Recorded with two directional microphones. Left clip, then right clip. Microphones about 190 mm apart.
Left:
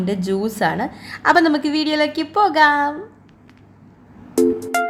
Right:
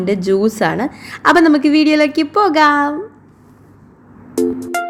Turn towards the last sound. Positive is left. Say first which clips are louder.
# left 1 dB
turn(degrees=0)  # may be behind; listen again after turning